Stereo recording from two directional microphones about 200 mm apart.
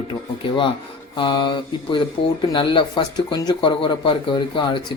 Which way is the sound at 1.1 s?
25° left (ahead or behind).